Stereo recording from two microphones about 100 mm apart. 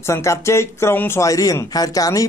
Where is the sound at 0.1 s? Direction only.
30° left (ahead or behind).